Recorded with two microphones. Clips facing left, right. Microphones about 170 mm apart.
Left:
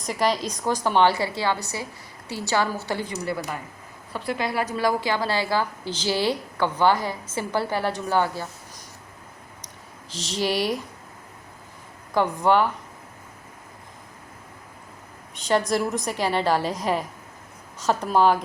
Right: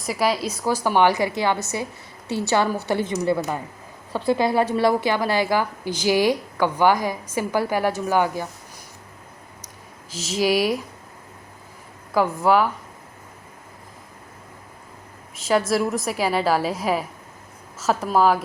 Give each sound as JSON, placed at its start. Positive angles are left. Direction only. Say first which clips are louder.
{"t": 0.0, "sound": "a woman's voice", "louder": "right 1 dB", "side_deg": -5}
{"t": 10.1, "sound": "a woman's voice", "louder": "right 5 dB", "side_deg": -5}
{"t": 12.1, "sound": "a woman's voice", "louder": "right 2 dB", "side_deg": -5}
{"t": 15.4, "sound": "a woman's voice", "louder": "right 2 dB", "side_deg": -5}